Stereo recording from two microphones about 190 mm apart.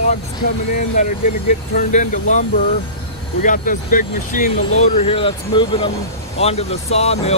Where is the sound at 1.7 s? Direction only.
40° left (ahead or behind).